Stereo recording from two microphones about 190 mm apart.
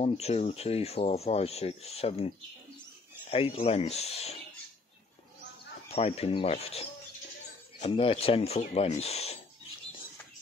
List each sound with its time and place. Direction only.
0.0 s speech: 35° left (ahead or behind)
5.9 s speech: 30° left (ahead or behind)